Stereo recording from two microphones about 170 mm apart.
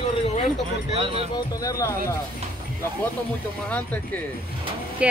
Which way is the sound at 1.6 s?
20° left (ahead or behind).